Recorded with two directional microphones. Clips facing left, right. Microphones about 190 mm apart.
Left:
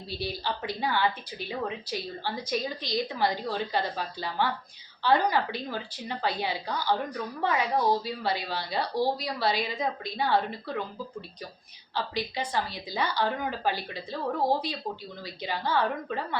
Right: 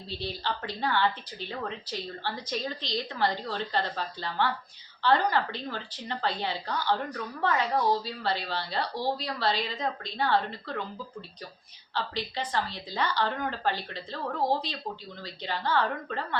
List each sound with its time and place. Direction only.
0.1 s a woman's voice: 10° left (ahead or behind)
11.9 s a woman's voice: 10° left (ahead or behind)